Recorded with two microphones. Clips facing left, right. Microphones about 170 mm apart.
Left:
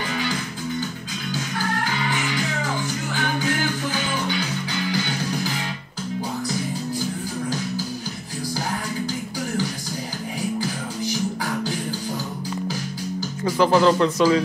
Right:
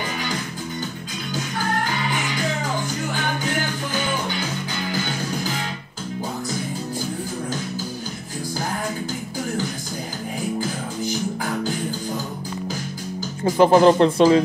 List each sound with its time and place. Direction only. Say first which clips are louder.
13.6 s speech: right 4 dB; 20° right (ahead or behind)